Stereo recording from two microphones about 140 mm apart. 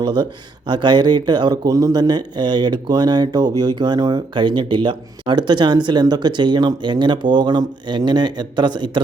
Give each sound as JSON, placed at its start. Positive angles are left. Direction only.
{"t": 0.0, "sound": "speech", "side_deg": -30}